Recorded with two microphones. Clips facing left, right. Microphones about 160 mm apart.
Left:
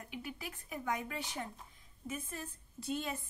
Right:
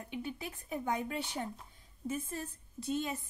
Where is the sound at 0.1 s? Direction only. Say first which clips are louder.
Right 5 dB; 25° right (ahead or behind).